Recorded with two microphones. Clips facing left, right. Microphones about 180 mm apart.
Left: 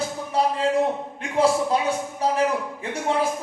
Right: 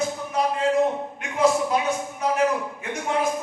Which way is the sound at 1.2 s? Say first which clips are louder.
Left 1 dB; 30° left (ahead or behind).